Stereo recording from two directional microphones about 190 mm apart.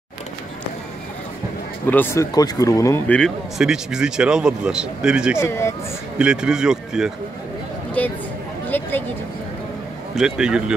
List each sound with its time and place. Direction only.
1.9 s speech: 10° left (ahead or behind)
3.2 s speech: centre (ahead or behind)
5.4 s speech: 15° left (ahead or behind)
6.1 s speech: 5° right (ahead or behind)
8.0 s speech: 10° left (ahead or behind)
10.1 s speech: 5° right (ahead or behind)